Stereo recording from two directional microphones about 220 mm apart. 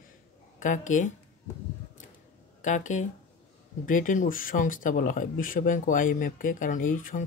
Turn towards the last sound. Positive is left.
turn(degrees=35)  # may be behind; listen again after turning